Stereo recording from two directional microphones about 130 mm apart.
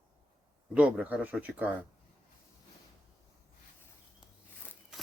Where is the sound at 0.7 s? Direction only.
10° right (ahead or behind).